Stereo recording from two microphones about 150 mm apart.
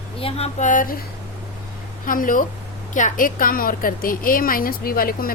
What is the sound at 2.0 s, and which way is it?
A woman's voice, 65° left (ahead or behind).